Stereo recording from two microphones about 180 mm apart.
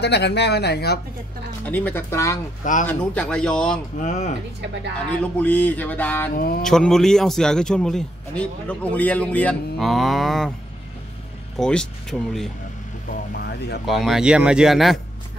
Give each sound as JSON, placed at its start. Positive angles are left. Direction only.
{"t": 0.0, "sound": "speech", "side_deg": 70}
{"t": 1.7, "sound": "a sound", "side_deg": 10}
{"t": 2.6, "sound": "mantra", "side_deg": 45}
{"t": 2.9, "sound": "a man's voice", "side_deg": 5}
{"t": 4.0, "sound": "speech", "side_deg": 40}
{"t": 4.9, "sound": "a sound", "side_deg": 10}
{"t": 6.3, "sound": "mantra", "side_deg": 55}
{"t": 6.6, "sound": "a man's voice", "side_deg": 5}
{"t": 11.5, "sound": "a man's voice", "side_deg": 5}
{"t": 13.4, "sound": "speech", "side_deg": 65}
{"t": 13.8, "sound": "a man's voice", "side_deg": 0}